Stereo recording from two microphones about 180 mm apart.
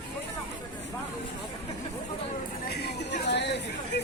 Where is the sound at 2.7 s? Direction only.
65° left (ahead or behind).